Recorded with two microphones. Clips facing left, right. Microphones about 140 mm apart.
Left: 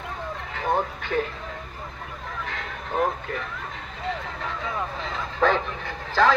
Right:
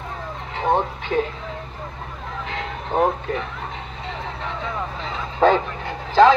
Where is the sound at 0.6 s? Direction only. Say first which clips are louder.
Right 5 dB; 25° right (ahead or behind).